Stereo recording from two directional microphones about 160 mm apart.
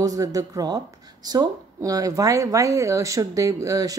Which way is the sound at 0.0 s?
20° right (ahead or behind).